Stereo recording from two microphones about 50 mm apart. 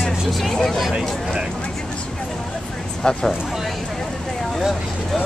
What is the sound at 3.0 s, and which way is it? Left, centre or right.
Speech, centre.